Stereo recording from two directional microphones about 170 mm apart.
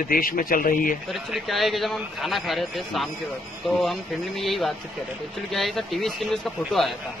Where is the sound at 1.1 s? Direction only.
Centre (ahead or behind).